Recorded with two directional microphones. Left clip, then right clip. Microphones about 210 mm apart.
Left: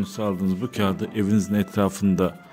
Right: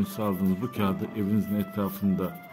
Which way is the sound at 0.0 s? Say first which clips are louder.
Left 3 dB; 15° left (ahead or behind).